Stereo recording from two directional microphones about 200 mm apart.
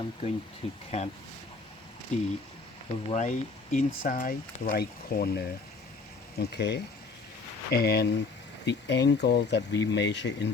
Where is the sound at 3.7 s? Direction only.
40° left (ahead or behind); by 10.5 s 60° left (ahead or behind).